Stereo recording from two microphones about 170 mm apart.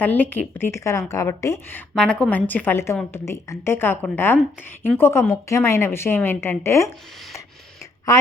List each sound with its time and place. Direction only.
0.0 s a woman's voice: 10° left (ahead or behind)